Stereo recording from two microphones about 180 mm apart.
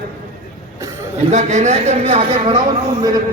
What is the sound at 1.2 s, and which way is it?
A woman's voice, 40° right (ahead or behind).